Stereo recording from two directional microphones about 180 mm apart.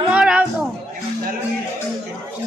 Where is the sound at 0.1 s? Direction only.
5° right (ahead or behind).